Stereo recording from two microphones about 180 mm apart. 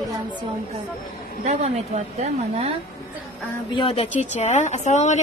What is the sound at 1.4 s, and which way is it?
A woman's voice, 40° right (ahead or behind).